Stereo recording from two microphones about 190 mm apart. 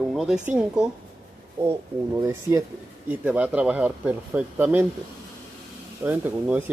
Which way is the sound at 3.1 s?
5° right (ahead or behind).